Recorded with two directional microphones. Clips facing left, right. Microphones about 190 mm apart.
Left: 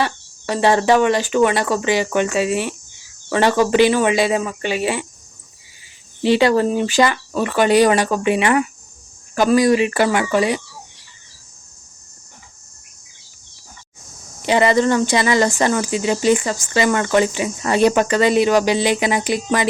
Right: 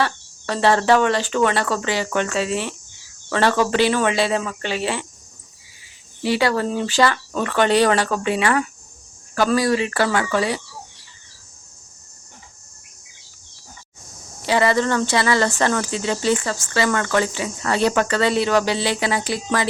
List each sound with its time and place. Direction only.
0.0 s speech: 15° left (ahead or behind)
6.2 s speech: 20° left (ahead or behind)
14.4 s speech: 20° left (ahead or behind)